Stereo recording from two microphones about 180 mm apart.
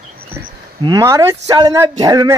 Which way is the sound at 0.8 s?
20° right (ahead or behind).